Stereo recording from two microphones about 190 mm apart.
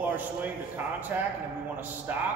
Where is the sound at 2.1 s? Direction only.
10° right (ahead or behind).